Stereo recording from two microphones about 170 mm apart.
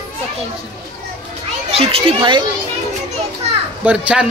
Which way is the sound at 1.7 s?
35° right (ahead or behind).